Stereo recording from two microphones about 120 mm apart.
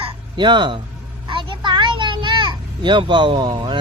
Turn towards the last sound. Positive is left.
turn(degrees=-40)  # may be behind; listen again after turning